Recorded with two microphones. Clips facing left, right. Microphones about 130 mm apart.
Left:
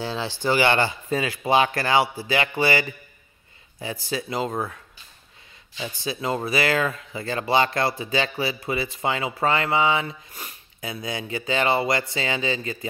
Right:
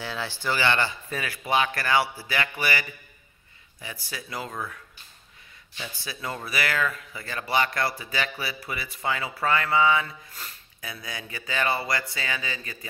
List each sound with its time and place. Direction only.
0.0 s speech: 30° left (ahead or behind)
5.8 s speech: 25° left (ahead or behind)